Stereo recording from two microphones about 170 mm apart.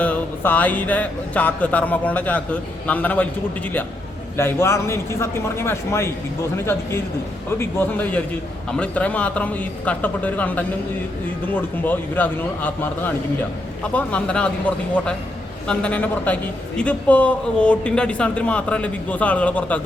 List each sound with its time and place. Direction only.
0.0 s a man's voice: 10° left (ahead or behind)
4.4 s a man's voice: 15° left (ahead or behind)
7.6 s a man's voice: 10° left (ahead or behind)